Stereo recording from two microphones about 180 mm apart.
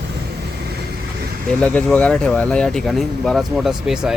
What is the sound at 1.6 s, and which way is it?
Speech, 5° left (ahead or behind).